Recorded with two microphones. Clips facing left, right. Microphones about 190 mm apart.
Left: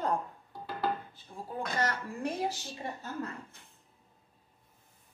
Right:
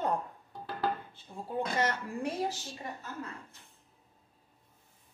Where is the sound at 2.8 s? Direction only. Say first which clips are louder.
Left 3 dB; 30° left (ahead or behind).